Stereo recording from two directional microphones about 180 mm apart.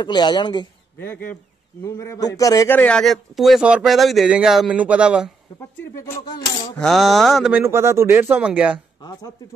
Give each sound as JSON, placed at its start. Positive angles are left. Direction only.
{"t": 0.0, "sound": "speech", "side_deg": 25}
{"t": 0.9, "sound": "speech", "side_deg": 10}
{"t": 5.9, "sound": "speech", "side_deg": 15}
{"t": 6.8, "sound": "speech", "side_deg": 0}
{"t": 7.6, "sound": "speech", "side_deg": -15}
{"t": 9.0, "sound": "speech", "side_deg": 20}